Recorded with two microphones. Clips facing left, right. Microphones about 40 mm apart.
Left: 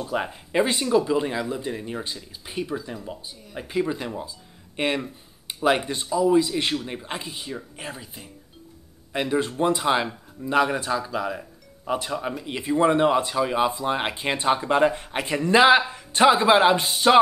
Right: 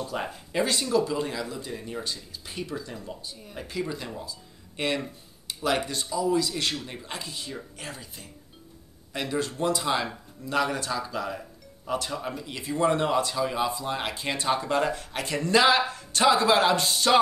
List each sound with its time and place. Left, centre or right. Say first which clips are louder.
0.0 s speech: left 4 dB; left